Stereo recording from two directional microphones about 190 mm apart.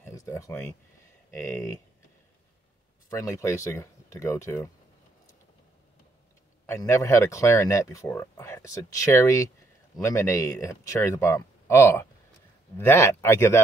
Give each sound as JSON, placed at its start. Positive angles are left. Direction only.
{"t": 0.0, "sound": "speech", "side_deg": 15}
{"t": 3.1, "sound": "speech", "side_deg": 15}
{"t": 6.6, "sound": "speech", "side_deg": 15}